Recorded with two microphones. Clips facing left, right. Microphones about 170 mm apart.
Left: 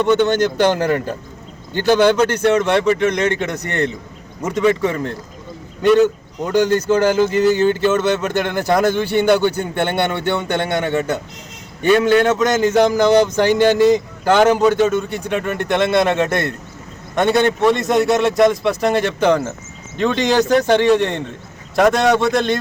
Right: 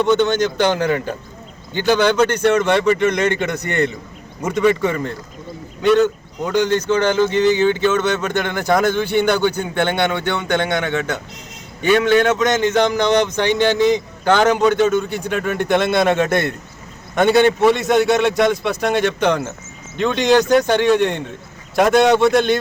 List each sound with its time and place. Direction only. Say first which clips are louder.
0.0 s speech: left 1 dB; 5° left (ahead or behind)
10.7 s a man's voice: left 2 dB; 30° left (ahead or behind)
12.2 s speech: left 1 dB; 5° left (ahead or behind)